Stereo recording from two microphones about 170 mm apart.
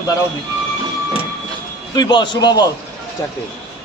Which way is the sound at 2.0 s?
25° left (ahead or behind).